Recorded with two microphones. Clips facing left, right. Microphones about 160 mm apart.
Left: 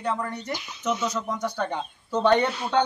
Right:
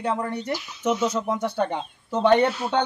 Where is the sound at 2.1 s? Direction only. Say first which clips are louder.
Right 2 dB; 15° right (ahead or behind).